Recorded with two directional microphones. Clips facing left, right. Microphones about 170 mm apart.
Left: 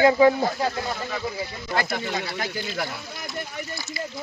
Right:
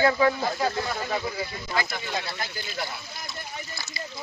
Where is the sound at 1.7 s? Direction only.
55° left (ahead or behind).